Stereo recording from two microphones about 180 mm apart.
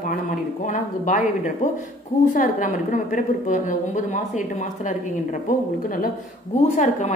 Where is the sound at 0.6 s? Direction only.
45° left (ahead or behind).